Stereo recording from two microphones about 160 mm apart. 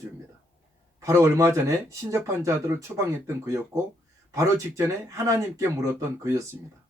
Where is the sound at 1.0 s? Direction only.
20° right (ahead or behind).